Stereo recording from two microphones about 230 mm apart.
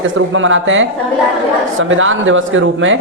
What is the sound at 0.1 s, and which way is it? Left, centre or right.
Speech, right.